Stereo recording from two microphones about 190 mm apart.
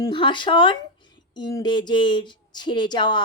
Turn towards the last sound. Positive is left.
turn(degrees=25)  # may be behind; listen again after turning